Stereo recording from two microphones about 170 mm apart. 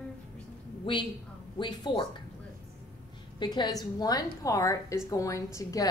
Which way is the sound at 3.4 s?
25° left (ahead or behind).